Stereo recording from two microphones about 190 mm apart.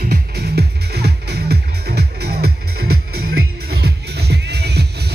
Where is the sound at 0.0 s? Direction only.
55° right (ahead or behind).